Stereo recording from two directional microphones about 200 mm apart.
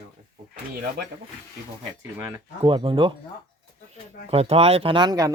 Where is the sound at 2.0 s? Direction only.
10° right (ahead or behind).